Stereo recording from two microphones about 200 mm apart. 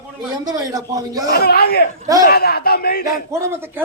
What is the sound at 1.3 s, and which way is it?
Speech, 50° left (ahead or behind).